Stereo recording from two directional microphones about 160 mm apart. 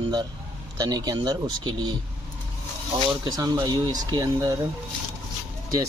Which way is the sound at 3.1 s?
25° right (ahead or behind).